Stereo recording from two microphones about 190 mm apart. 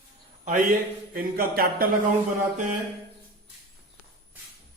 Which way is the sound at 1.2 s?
50° right (ahead or behind).